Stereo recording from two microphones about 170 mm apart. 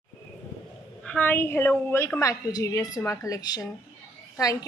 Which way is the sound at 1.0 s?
10° left (ahead or behind).